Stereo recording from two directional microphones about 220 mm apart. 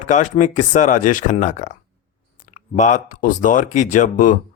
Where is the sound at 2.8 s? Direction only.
35° left (ahead or behind).